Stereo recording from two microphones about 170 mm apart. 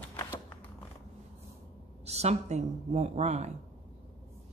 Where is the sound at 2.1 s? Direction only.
40° right (ahead or behind).